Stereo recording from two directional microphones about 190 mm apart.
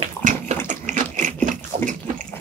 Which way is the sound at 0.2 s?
40° right (ahead or behind).